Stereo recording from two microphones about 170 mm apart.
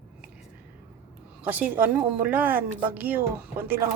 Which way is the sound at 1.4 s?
10° right (ahead or behind).